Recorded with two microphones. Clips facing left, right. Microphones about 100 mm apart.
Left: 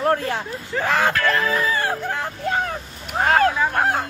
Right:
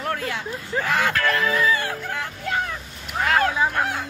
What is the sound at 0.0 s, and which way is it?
Speech, 35° left (ahead or behind).